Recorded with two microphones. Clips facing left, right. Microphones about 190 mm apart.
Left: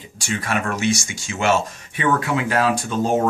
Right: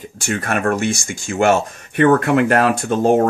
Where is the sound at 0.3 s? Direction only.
55° right (ahead or behind).